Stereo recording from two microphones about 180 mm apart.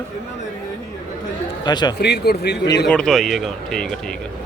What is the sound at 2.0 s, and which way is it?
Speech, 65° left (ahead or behind).